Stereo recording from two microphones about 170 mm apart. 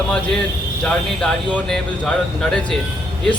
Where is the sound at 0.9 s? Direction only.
5° left (ahead or behind).